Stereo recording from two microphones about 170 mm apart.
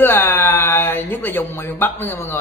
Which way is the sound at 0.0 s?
10° left (ahead or behind).